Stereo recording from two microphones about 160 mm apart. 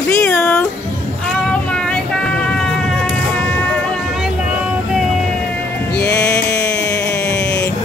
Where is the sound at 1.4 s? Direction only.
5° left (ahead or behind).